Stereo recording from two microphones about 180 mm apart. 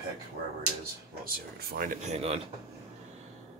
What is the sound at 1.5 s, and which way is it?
Speech, 50° right (ahead or behind).